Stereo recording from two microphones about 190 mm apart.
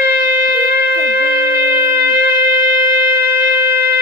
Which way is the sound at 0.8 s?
70° left (ahead or behind).